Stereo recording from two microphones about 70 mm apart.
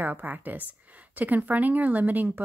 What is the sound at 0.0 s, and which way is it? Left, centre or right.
Speech, right.